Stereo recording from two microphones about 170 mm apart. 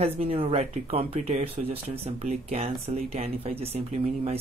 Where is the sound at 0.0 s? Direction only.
35° right (ahead or behind).